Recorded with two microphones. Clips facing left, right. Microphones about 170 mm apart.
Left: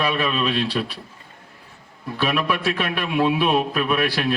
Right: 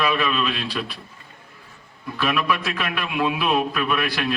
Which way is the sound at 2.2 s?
35° left (ahead or behind).